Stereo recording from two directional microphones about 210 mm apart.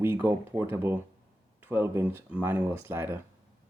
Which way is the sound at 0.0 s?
10° right (ahead or behind).